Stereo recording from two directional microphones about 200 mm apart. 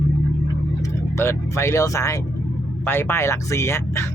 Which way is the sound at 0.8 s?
15° left (ahead or behind).